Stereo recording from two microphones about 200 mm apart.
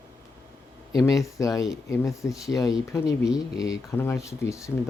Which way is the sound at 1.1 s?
15° left (ahead or behind).